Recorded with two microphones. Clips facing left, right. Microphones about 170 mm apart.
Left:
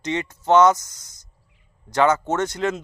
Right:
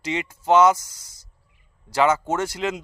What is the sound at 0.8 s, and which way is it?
Speech, 30° right (ahead or behind).